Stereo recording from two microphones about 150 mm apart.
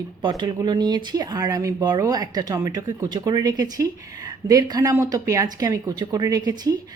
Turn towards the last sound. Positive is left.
turn(degrees=-25)  # may be behind; listen again after turning